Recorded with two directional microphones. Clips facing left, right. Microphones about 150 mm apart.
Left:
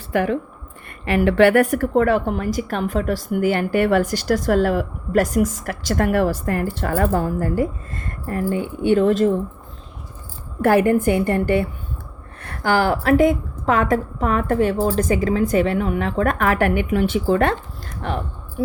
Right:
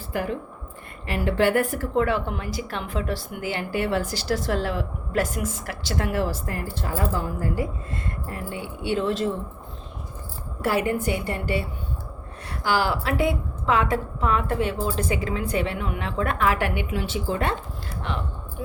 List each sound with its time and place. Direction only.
0.1 s a woman's voice: 75° left (ahead or behind)
1.8 s a woman's voice: 45° left (ahead or behind)
10.6 s a woman's voice: 55° left (ahead or behind)